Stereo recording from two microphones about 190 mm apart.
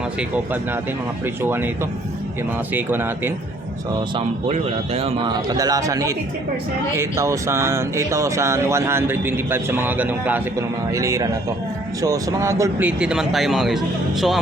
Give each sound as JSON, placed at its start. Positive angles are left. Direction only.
{"t": 0.2, "sound": "speech", "side_deg": -10}
{"t": 4.1, "sound": "speech", "side_deg": -35}
{"t": 13.0, "sound": "speech", "side_deg": -5}